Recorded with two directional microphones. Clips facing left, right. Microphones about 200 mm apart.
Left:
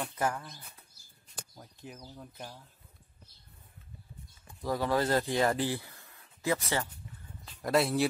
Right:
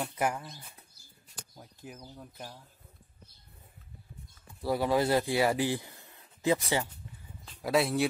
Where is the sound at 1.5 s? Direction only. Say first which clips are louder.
Right 2 dB; 5° right (ahead or behind).